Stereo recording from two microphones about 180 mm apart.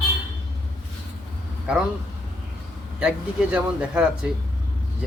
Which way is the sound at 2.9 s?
5° right (ahead or behind).